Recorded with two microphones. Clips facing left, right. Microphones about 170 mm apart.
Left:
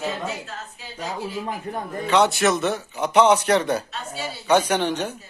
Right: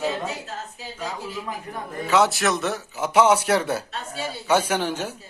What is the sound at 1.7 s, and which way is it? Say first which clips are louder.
Speech: left 4 dB; 30° left (ahead or behind).